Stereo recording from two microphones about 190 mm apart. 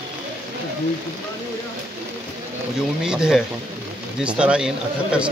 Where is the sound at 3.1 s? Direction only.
5° right (ahead or behind).